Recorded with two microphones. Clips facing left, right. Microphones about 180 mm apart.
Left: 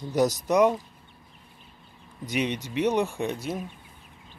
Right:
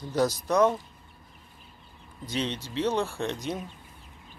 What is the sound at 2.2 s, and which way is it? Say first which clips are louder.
Speech: left 3 dB; 15° left (ahead or behind).